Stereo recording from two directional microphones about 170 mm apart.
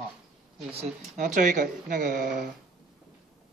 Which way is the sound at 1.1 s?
50° right (ahead or behind).